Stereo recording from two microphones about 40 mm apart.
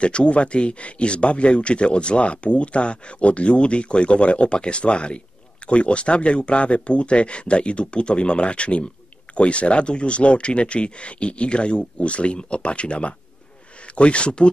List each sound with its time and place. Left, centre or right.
0.0 s speech: left